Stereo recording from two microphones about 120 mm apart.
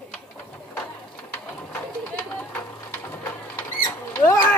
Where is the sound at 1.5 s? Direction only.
10° left (ahead or behind).